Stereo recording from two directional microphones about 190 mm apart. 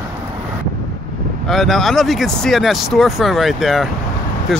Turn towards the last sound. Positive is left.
turn(degrees=0)  # may be behind; listen again after turning